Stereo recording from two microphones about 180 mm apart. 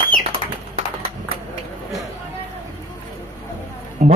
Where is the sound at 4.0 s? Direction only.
40° right (ahead or behind).